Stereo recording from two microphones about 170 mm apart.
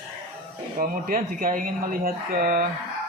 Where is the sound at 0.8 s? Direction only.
55° right (ahead or behind).